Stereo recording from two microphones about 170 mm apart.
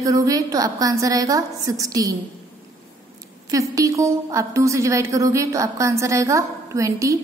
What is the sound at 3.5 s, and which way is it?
A woman's voice, 20° right (ahead or behind).